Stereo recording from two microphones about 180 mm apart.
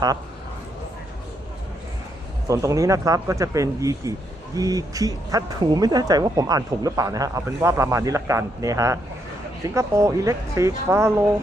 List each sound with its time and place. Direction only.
2.5 s speech: 15° right (ahead or behind)